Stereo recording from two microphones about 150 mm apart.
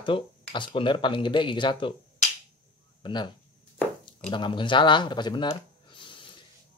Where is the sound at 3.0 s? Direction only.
30° left (ahead or behind).